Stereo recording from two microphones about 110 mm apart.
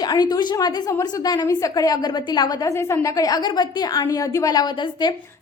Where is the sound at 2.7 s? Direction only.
25° left (ahead or behind).